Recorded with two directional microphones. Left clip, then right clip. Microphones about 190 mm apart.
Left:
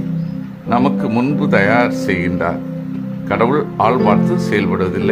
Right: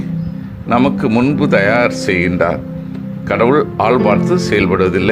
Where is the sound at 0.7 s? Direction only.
15° right (ahead or behind).